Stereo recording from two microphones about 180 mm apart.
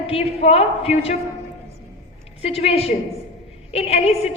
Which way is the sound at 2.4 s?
35° left (ahead or behind).